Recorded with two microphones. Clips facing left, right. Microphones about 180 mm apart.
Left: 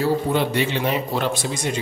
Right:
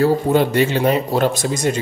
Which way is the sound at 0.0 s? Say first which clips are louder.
Right 5 dB; 45° right (ahead or behind).